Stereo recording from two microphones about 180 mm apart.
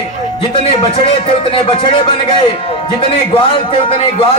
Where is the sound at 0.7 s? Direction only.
30° left (ahead or behind).